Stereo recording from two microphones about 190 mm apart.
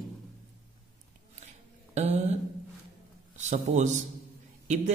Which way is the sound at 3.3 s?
40° right (ahead or behind).